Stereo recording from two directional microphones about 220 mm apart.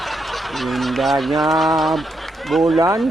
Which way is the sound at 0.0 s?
Centre (ahead or behind).